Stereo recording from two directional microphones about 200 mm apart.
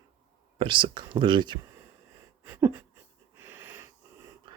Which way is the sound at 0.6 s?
25° right (ahead or behind).